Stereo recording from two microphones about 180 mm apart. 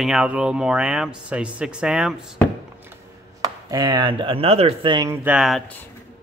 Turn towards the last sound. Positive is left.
turn(degrees=-5)  # may be behind; listen again after turning